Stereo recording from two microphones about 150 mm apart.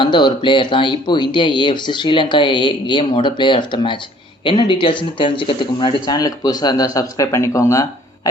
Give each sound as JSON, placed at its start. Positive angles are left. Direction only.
{"t": 0.0, "sound": "speech", "side_deg": 30}